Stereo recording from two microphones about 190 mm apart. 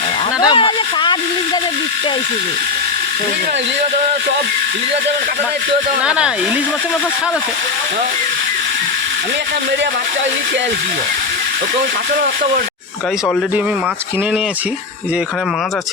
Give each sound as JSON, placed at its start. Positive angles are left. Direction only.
{"t": 0.4, "sound": "speech", "side_deg": 25}
{"t": 6.1, "sound": "speech", "side_deg": -5}